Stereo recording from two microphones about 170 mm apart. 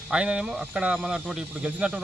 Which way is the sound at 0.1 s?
5° right (ahead or behind).